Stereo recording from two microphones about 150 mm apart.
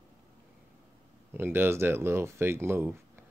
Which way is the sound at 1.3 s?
15° right (ahead or behind).